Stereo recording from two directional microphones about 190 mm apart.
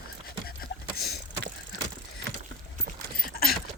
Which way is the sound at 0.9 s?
55° left (ahead or behind).